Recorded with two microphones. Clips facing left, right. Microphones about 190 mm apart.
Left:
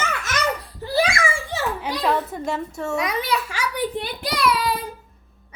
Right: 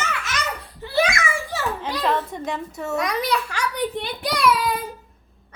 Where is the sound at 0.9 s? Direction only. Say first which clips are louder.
Even; 30° left (ahead or behind).